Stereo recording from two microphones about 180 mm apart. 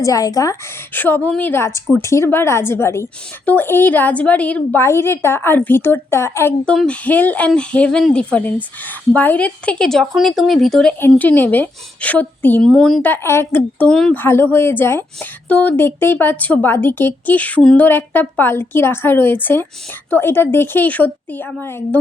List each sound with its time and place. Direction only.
0.0 s a woman's voice: 20° left (ahead or behind)